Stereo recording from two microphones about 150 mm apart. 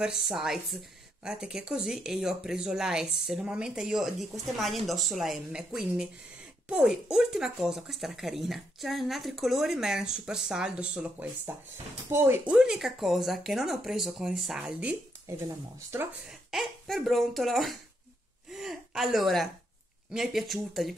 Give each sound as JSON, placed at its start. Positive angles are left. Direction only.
{"t": 0.0, "sound": "speech", "side_deg": -5}
{"t": 16.3, "sound": "a woman's voice", "side_deg": 0}